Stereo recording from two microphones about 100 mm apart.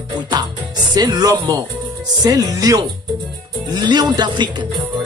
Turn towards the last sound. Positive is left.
turn(degrees=-50)  # may be behind; listen again after turning